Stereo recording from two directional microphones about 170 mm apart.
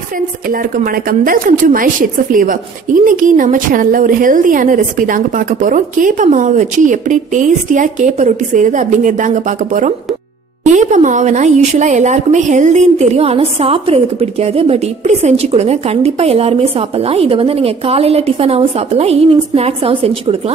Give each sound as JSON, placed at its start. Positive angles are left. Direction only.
{"t": 0.5, "sound": "a woman's voice", "side_deg": -55}